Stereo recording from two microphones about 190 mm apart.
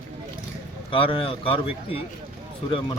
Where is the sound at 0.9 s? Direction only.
25° left (ahead or behind).